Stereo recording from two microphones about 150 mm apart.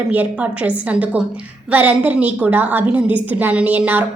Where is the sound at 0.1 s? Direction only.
10° right (ahead or behind).